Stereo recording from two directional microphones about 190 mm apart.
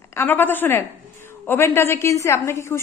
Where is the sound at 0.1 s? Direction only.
10° left (ahead or behind).